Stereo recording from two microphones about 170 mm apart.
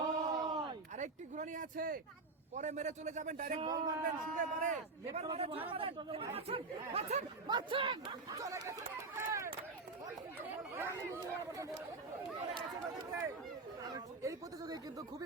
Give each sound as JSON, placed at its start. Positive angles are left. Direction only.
{"t": 0.0, "sound": "a sound", "side_deg": -40}
{"t": 0.9, "sound": "a sound", "side_deg": -45}
{"t": 2.6, "sound": "a man's voice", "side_deg": -45}
{"t": 3.6, "sound": "speech", "side_deg": -25}
{"t": 4.0, "sound": "a man's voice", "side_deg": -50}
{"t": 5.3, "sound": "speech", "side_deg": -35}
{"t": 7.4, "sound": "speech", "side_deg": -25}
{"t": 9.1, "sound": "a sound", "side_deg": -15}
{"t": 10.6, "sound": "speech", "side_deg": -15}
{"t": 13.8, "sound": "speech", "side_deg": -20}